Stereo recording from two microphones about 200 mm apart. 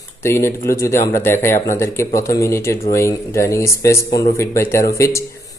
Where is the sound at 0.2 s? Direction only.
15° left (ahead or behind).